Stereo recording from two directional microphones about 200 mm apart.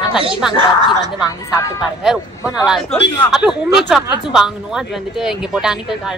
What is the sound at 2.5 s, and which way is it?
Speech, centre (ahead or behind).